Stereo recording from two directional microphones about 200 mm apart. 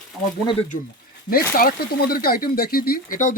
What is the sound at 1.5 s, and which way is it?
Speech, 50° left (ahead or behind).